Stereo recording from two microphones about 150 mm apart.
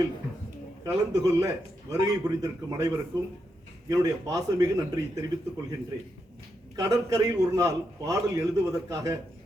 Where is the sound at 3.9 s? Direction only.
25° right (ahead or behind).